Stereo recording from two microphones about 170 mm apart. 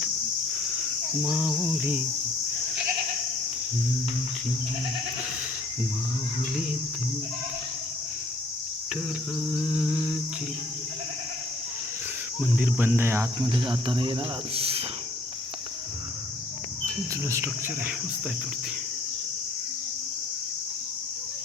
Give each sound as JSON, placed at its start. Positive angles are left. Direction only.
{"t": 1.2, "sound": "cricket", "side_deg": -5}
{"t": 1.7, "sound": "speech", "side_deg": -10}
{"t": 12.4, "sound": "speech", "side_deg": -10}
{"t": 17.3, "sound": "speech", "side_deg": -15}